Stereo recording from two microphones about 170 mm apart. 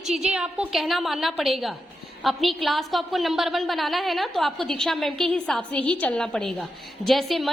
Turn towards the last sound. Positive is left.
turn(degrees=0)  # may be behind; listen again after turning